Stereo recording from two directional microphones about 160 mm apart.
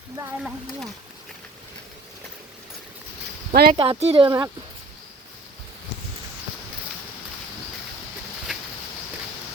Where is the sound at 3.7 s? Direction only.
30° right (ahead or behind).